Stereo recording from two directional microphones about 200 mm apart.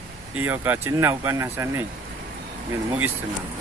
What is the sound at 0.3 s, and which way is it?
Speech, 10° right (ahead or behind).